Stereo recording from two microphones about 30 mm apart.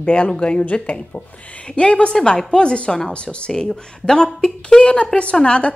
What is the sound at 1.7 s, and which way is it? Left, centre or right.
A woman's voice, left.